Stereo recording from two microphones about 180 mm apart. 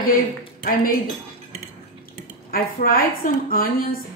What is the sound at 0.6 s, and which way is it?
Speech, 50° left (ahead or behind).